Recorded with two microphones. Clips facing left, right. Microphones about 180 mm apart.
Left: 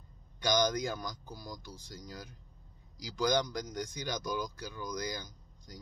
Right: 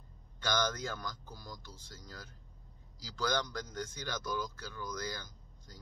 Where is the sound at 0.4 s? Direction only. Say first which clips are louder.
Left 5 dB; 15° left (ahead or behind).